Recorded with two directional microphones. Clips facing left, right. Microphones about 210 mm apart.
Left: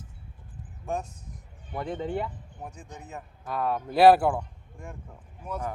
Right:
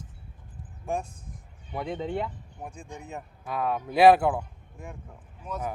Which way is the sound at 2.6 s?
10° right (ahead or behind).